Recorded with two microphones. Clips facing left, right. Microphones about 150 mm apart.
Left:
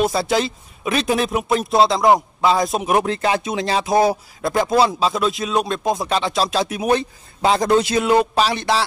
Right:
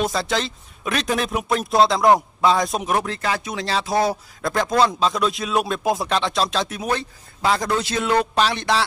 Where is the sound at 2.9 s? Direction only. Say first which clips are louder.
Left 5 dB; 20° left (ahead or behind).